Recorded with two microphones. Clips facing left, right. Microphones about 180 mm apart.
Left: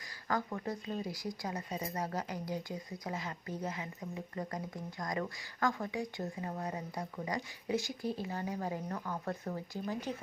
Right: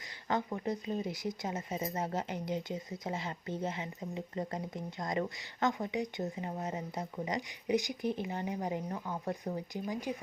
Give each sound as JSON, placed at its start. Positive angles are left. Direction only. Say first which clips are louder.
{"t": 0.3, "sound": "speech", "louder": "right 2 dB", "side_deg": -20}